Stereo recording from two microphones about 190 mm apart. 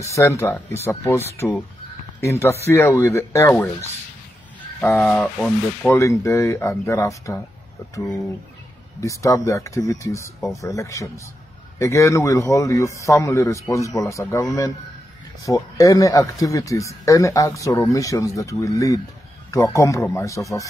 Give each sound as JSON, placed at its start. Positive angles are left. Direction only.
{"t": 0.0, "sound": "speech", "side_deg": 15}
{"t": 4.7, "sound": "speech", "side_deg": 5}
{"t": 9.0, "sound": "speech", "side_deg": 15}